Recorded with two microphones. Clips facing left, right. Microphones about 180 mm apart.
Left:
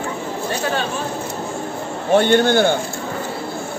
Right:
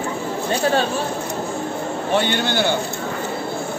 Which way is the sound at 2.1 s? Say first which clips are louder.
Left 7 dB; 50° left (ahead or behind).